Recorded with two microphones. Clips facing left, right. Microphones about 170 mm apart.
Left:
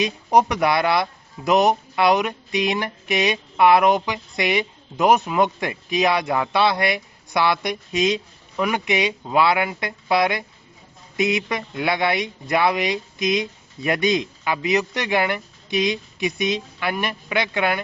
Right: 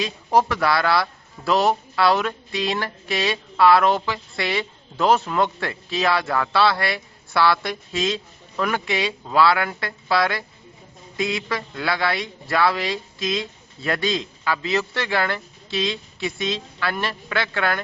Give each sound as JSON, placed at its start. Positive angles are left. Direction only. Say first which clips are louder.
{"t": 0.0, "sound": "a man's voice", "louder": "left 2 dB", "side_deg": 20}